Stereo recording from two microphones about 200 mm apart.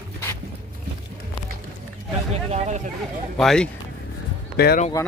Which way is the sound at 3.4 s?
5° left (ahead or behind).